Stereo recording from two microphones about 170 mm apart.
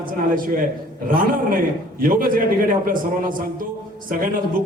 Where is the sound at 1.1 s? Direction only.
55° right (ahead or behind).